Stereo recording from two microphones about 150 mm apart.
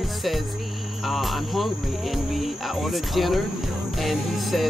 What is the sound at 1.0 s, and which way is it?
Cricket, centre (ahead or behind).